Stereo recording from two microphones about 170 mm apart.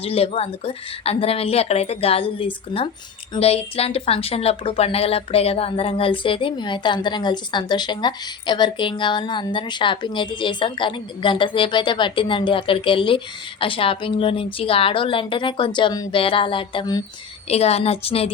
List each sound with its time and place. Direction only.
0.0 s speech: 35° left (ahead or behind)
17.5 s speech: 40° left (ahead or behind)